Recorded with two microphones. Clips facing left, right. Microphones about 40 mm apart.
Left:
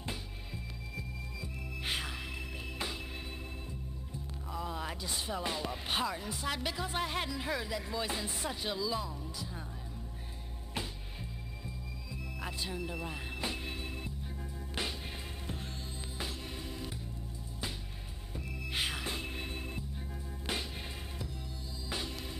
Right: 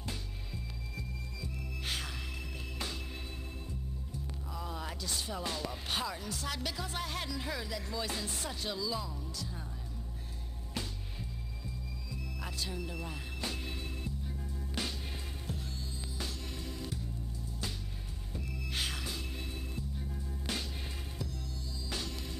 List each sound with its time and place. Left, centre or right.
0.9 s music: centre
4.6 s music: centre
10.7 s music: centre
15.4 s music: left
16.2 s music: centre
18.3 s music: centre
19.0 s organ: left
20.0 s music: centre
21.8 s music: centre